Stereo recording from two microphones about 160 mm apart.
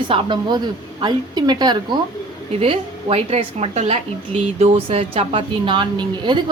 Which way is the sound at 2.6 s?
40° right (ahead or behind).